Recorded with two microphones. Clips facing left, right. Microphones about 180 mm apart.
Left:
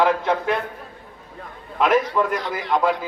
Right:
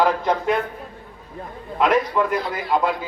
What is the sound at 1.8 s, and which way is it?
A man's voice, centre (ahead or behind).